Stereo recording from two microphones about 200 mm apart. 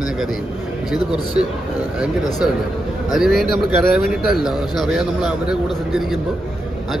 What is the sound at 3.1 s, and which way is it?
Speech, centre (ahead or behind).